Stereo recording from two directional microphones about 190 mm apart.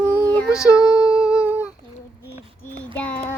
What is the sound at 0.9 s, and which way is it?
Humming, 20° left (ahead or behind).